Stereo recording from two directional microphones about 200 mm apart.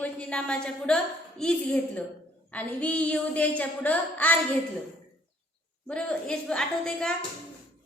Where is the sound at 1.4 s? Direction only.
5° left (ahead or behind).